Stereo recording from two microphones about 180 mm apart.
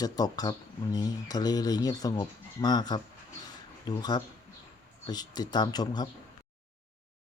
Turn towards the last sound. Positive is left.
turn(degrees=20)  # may be behind; listen again after turning